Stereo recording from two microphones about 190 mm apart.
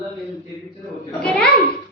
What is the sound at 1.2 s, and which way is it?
Speech, 5° left (ahead or behind).